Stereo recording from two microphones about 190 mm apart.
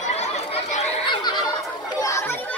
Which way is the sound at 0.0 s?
35° left (ahead or behind).